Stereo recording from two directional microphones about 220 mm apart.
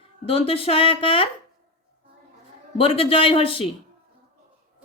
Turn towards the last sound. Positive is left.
turn(degrees=25)  # may be behind; listen again after turning